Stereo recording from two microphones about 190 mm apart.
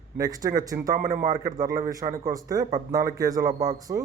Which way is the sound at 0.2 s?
20° right (ahead or behind).